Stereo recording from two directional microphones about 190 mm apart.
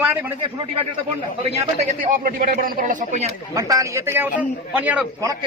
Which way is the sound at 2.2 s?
45° right (ahead or behind).